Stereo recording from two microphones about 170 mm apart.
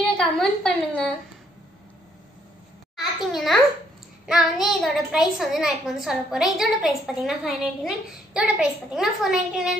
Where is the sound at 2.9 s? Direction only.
Centre (ahead or behind).